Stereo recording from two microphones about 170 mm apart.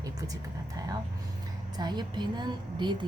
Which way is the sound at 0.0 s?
20° right (ahead or behind).